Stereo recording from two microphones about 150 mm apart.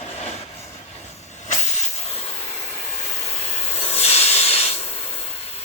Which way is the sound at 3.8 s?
45° left (ahead or behind).